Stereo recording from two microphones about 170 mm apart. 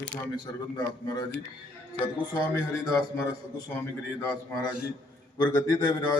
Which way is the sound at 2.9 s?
20° left (ahead or behind).